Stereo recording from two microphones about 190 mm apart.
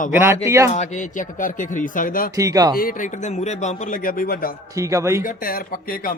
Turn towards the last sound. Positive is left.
turn(degrees=50)  # may be behind; listen again after turning